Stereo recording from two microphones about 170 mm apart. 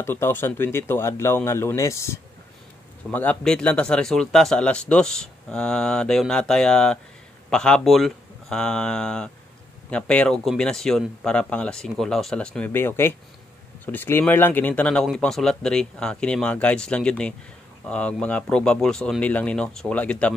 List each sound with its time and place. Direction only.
0.0 s speech: 15° left (ahead or behind)